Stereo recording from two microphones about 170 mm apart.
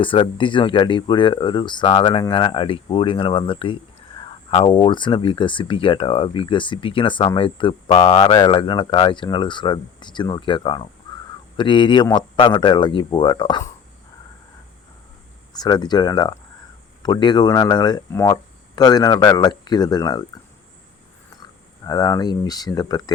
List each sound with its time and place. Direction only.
0.0 s speech: 30° left (ahead or behind)
15.5 s speech: 25° left (ahead or behind)
21.8 s speech: 20° left (ahead or behind)